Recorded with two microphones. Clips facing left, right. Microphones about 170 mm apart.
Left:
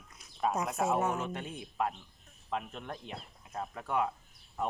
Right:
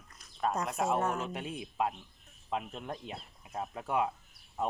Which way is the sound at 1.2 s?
10° right (ahead or behind).